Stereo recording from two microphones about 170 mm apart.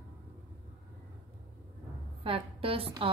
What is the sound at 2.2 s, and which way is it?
Speech, 35° right (ahead or behind).